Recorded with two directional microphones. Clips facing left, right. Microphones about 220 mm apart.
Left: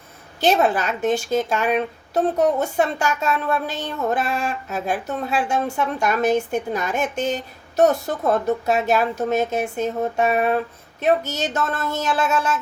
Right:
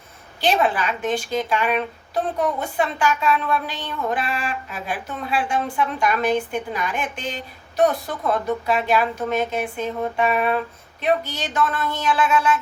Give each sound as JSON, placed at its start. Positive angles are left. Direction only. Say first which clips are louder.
{"t": 0.3, "sound": "speech", "louder": "left 2 dB", "side_deg": 45}